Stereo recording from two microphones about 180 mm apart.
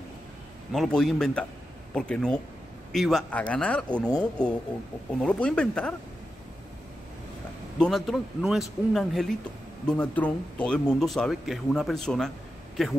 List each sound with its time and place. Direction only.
0.7 s speech: 5° left (ahead or behind)
7.8 s speech: centre (ahead or behind)